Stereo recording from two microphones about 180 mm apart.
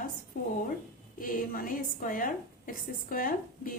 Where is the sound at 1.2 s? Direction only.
50° left (ahead or behind).